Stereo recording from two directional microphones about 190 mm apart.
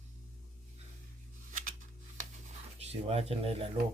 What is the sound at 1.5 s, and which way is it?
Scissors, 45° right (ahead or behind).